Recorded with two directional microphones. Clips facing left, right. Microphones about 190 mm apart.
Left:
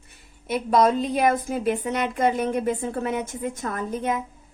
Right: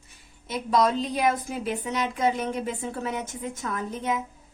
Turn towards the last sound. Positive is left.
turn(degrees=50)  # may be behind; listen again after turning